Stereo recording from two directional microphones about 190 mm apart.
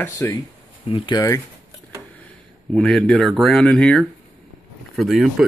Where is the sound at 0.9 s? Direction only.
25° left (ahead or behind).